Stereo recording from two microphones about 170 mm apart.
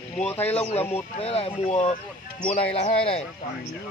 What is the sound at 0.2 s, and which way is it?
Speech, 10° left (ahead or behind).